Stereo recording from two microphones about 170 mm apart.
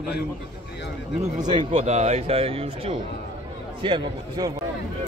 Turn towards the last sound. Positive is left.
turn(degrees=-25)  # may be behind; listen again after turning